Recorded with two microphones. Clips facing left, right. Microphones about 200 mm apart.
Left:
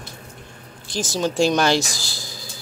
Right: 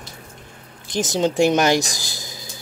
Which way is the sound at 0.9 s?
20° right (ahead or behind).